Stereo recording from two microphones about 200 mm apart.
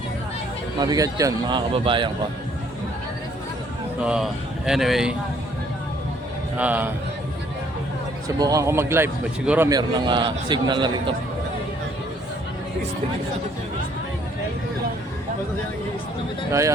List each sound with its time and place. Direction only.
0.8 s a man's voice: 20° right (ahead or behind)
4.0 s speech: 5° right (ahead or behind)
6.6 s speech: 10° right (ahead or behind)
8.4 s a man's voice: 15° right (ahead or behind)
16.5 s speech: 15° right (ahead or behind)